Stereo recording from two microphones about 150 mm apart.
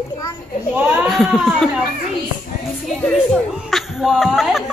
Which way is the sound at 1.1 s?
Centre (ahead or behind).